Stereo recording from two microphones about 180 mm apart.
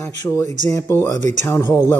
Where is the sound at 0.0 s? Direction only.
15° left (ahead or behind).